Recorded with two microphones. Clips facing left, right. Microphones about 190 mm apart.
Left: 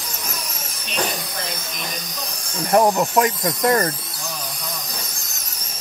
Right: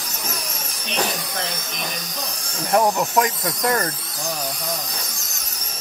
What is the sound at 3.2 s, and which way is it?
Speech, 5° left (ahead or behind).